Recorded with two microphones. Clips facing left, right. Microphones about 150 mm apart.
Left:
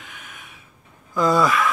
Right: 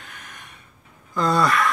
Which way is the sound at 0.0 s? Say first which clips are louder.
Even; centre (ahead or behind).